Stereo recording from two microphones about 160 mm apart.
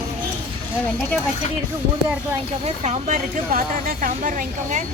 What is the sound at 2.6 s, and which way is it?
Speech, 45° right (ahead or behind).